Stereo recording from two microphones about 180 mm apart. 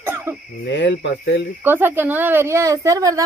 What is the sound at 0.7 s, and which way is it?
Speech, 75° left (ahead or behind).